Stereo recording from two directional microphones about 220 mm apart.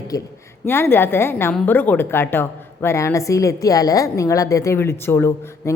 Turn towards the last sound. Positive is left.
turn(degrees=10)  # may be behind; listen again after turning